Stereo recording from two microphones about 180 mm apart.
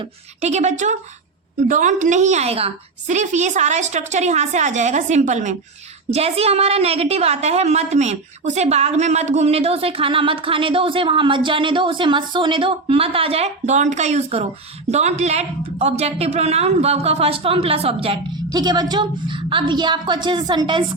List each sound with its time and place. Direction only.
0.4 s a woman's voice: 40° right (ahead or behind)